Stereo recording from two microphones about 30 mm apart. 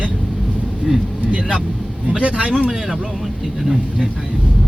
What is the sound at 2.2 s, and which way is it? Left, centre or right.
Speech, right.